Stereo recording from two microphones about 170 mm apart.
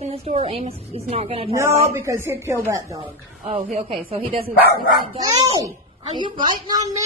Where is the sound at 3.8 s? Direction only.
30° right (ahead or behind).